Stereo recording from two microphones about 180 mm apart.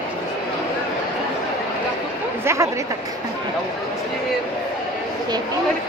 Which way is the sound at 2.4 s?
15° right (ahead or behind).